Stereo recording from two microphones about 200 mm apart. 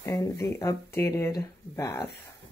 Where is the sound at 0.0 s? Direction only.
15° left (ahead or behind).